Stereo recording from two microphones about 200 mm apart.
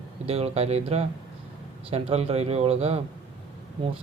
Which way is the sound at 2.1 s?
30° right (ahead or behind).